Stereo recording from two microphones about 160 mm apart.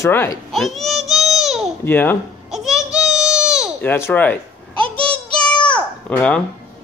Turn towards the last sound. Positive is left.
turn(degrees=5)  # may be behind; listen again after turning